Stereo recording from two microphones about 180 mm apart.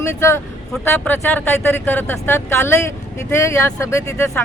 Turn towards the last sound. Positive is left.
turn(degrees=15)  # may be behind; listen again after turning